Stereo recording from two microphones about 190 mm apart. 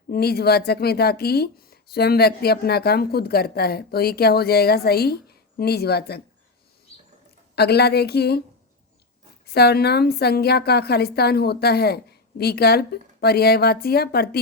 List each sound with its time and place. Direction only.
0.1 s speech: 55° left (ahead or behind)
7.5 s speech: 60° left (ahead or behind)
9.5 s speech: 60° left (ahead or behind)